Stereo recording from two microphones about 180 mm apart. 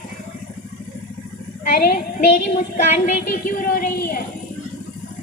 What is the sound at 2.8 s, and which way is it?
A woman's voice, 45° left (ahead or behind).